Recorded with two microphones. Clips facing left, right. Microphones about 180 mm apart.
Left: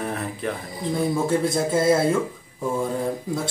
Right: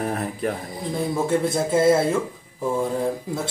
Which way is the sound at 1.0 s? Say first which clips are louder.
Even; centre (ahead or behind).